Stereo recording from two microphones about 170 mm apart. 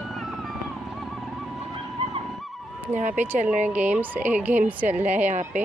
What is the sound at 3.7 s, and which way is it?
Speech, 10° right (ahead or behind).